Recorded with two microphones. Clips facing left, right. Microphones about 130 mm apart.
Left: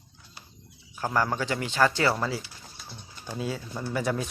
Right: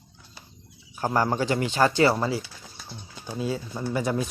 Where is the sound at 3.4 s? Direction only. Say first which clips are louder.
Right 4 dB; 10° right (ahead or behind).